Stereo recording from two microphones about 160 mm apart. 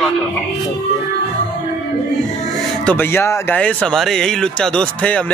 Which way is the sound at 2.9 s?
15° left (ahead or behind).